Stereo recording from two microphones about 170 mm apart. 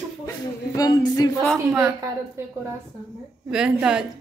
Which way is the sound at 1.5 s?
10° right (ahead or behind).